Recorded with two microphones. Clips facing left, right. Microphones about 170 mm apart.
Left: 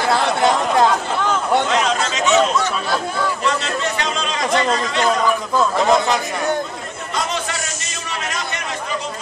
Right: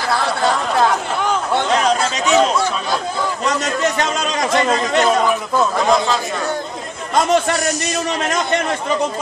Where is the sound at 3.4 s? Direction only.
45° right (ahead or behind).